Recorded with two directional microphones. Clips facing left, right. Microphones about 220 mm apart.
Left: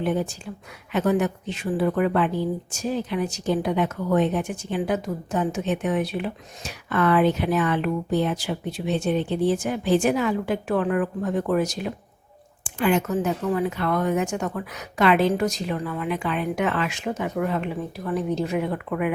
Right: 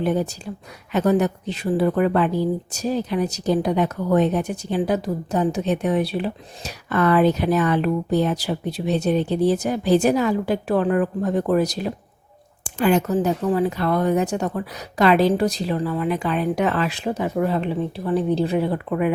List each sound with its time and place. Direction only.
0.0 s a woman's voice: 40° right (ahead or behind)